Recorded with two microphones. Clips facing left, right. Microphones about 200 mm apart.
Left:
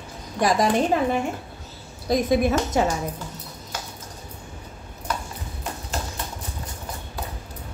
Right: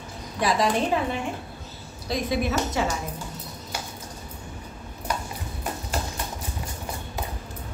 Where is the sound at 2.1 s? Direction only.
45° left (ahead or behind).